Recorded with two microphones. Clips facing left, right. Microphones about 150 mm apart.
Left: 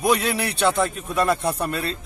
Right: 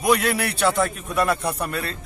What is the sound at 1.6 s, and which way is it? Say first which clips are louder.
Speech: left 2 dB; 25° left (ahead or behind).